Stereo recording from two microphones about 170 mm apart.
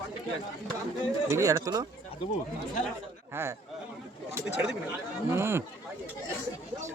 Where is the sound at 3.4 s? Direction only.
15° right (ahead or behind).